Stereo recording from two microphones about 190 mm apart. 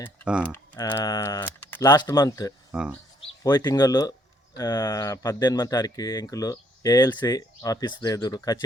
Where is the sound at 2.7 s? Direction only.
5° right (ahead or behind).